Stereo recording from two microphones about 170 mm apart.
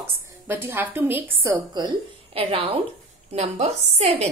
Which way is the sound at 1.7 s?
30° right (ahead or behind).